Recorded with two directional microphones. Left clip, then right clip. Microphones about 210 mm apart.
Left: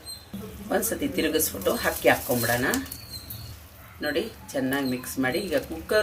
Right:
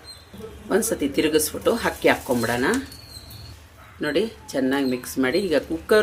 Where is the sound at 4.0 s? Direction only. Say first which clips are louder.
Right 5 dB; 35° right (ahead or behind).